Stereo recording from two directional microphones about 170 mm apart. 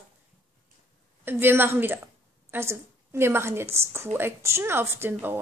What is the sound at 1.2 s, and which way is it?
A woman's voice, 15° right (ahead or behind).